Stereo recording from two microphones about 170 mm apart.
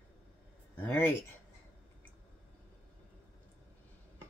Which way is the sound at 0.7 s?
10° left (ahead or behind).